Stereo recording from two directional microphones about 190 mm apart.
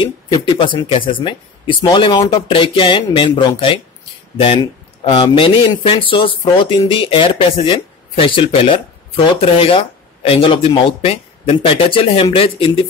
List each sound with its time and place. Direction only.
0.0 s speech: 25° left (ahead or behind)